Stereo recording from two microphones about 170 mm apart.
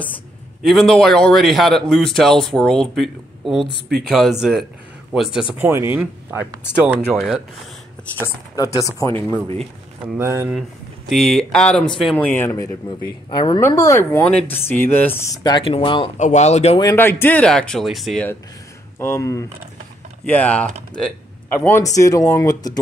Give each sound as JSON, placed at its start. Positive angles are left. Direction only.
{"t": 0.7, "sound": "a man's voice", "side_deg": 0}
{"t": 5.5, "sound": "a man's voice", "side_deg": -15}
{"t": 8.2, "sound": "speech", "side_deg": 20}
{"t": 10.0, "sound": "speech", "side_deg": -15}
{"t": 11.1, "sound": "a man's voice", "side_deg": 0}
{"t": 12.3, "sound": "speech", "side_deg": 15}
{"t": 13.3, "sound": "speech", "side_deg": 25}
{"t": 16.2, "sound": "speech", "side_deg": 45}
{"t": 16.8, "sound": "a man's voice", "side_deg": 15}
{"t": 18.9, "sound": "speech", "side_deg": 15}